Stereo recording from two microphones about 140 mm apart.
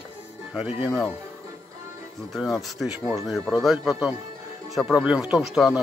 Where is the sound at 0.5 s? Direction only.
10° right (ahead or behind).